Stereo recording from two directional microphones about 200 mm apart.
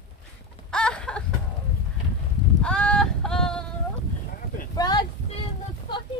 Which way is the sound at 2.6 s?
5° left (ahead or behind).